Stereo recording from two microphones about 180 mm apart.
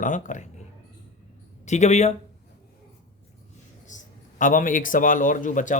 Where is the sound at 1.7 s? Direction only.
40° left (ahead or behind).